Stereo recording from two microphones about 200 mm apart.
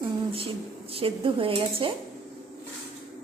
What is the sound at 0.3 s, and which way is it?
Speech, 30° right (ahead or behind).